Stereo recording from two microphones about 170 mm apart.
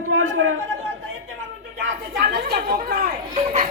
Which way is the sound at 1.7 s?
70° right (ahead or behind).